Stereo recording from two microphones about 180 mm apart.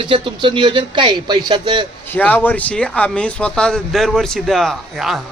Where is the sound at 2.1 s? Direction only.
10° left (ahead or behind).